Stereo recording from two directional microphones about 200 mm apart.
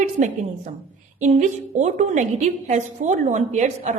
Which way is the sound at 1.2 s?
40° right (ahead or behind).